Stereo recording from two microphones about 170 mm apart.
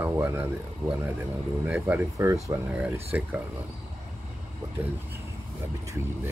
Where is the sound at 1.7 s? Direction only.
15° right (ahead or behind).